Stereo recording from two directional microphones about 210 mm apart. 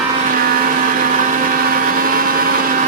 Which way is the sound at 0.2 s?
40° right (ahead or behind).